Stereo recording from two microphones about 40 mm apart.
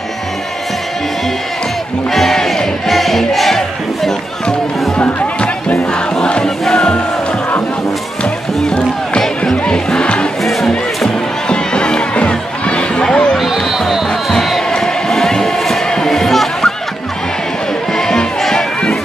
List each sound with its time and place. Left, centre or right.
2.1 s crowd: centre
4.9 s music: left
6.2 s crowd: left
8.2 s music: left
10.4 s crowd: centre
11.1 s music: left
13.4 s music: centre
14.3 s basketball bounce: centre
14.7 s a sound: centre
15.9 s music: centre
17.9 s music: centre